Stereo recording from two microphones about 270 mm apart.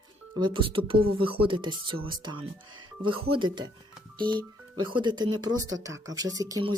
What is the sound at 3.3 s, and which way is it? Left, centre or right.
Speech, centre.